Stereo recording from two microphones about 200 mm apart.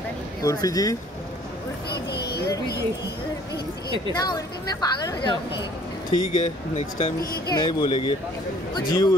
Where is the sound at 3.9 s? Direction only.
20° left (ahead or behind).